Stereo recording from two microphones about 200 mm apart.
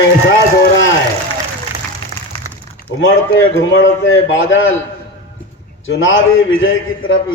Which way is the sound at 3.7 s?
75° left (ahead or behind).